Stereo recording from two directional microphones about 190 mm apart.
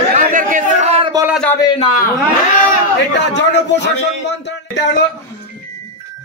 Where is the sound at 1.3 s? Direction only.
5° left (ahead or behind).